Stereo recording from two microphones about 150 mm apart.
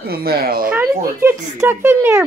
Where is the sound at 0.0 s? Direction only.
90° right.